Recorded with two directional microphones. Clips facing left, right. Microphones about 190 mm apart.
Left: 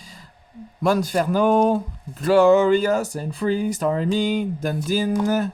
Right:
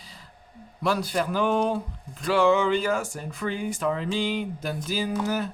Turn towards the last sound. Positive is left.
turn(degrees=45)  # may be behind; listen again after turning